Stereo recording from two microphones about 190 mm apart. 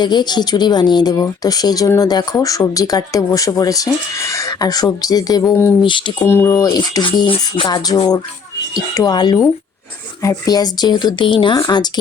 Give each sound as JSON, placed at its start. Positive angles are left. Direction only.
{"t": 0.0, "sound": "speech", "side_deg": 25}
{"t": 5.8, "sound": "speech", "side_deg": 25}
{"t": 6.2, "sound": "speech", "side_deg": 15}